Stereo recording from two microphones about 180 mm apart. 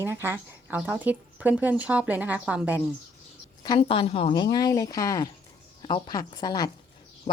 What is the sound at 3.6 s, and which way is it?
Speech, 30° left (ahead or behind).